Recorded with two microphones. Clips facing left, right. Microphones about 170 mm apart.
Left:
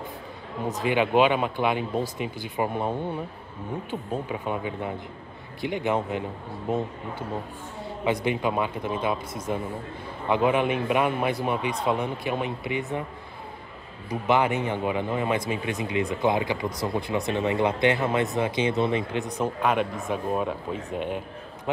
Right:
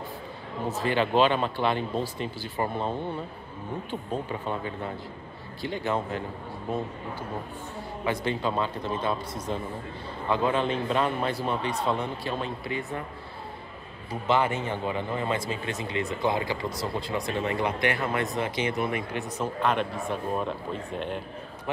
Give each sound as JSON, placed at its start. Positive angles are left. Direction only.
{"t": 0.7, "sound": "speech", "side_deg": 15}
{"t": 8.0, "sound": "speech", "side_deg": 20}
{"t": 14.2, "sound": "speech", "side_deg": 15}